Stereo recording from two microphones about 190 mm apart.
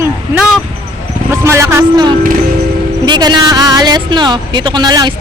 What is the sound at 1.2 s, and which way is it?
Speech, 15° right (ahead or behind).